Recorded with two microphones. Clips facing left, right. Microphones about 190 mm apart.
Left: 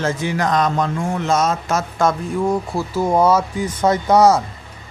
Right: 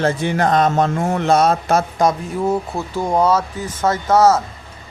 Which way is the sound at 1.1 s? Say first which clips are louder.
Right 4 dB; 60° right (ahead or behind).